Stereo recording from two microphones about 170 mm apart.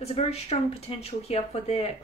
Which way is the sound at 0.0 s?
35° left (ahead or behind).